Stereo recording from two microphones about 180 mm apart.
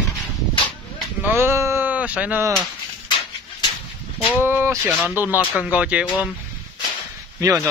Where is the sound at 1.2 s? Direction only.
15° right (ahead or behind).